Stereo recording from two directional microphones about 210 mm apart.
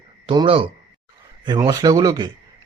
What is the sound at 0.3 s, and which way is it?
A man's voice, 25° right (ahead or behind).